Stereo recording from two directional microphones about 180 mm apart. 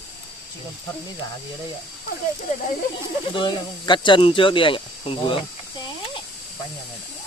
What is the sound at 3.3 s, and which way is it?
Speech, 25° left (ahead or behind).